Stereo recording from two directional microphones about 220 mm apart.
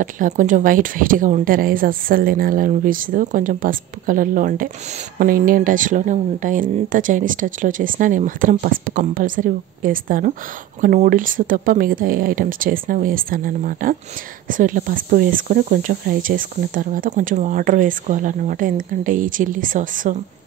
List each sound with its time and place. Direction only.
0.0 s speech: 35° right (ahead or behind)